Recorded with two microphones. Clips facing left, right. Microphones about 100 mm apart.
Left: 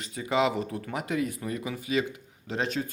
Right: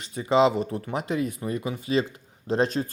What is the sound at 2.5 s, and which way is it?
Speech, 35° right (ahead or behind).